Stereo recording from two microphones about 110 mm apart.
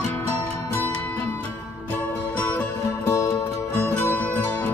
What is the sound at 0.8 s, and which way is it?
Music, 15° left (ahead or behind).